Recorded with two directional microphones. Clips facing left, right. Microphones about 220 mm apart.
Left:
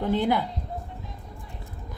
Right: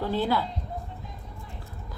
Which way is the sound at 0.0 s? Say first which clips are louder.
Left 2 dB; 20° left (ahead or behind).